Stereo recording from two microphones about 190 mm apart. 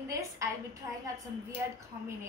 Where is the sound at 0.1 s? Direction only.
15° right (ahead or behind).